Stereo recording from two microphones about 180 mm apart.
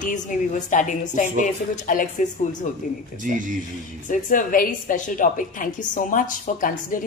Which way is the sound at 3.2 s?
45° right (ahead or behind).